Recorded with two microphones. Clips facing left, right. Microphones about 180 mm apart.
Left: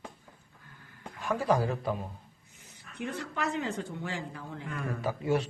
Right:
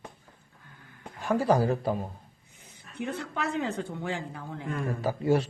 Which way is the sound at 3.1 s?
60° right (ahead or behind).